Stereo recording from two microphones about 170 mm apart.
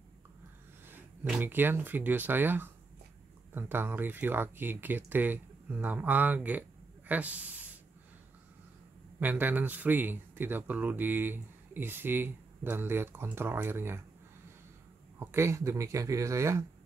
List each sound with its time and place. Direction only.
0.8 s speech: 10° right (ahead or behind)
9.2 s speech: 10° right (ahead or behind)
15.1 s speech: 15° right (ahead or behind)